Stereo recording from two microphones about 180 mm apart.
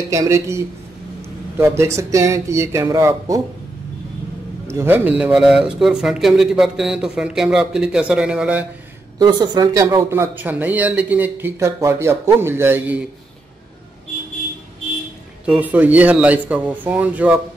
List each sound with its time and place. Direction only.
0.1 s speech: 15° right (ahead or behind)
4.6 s speech: 15° right (ahead or behind)
9.2 s speech: 25° right (ahead or behind)
15.4 s speech: 10° right (ahead or behind)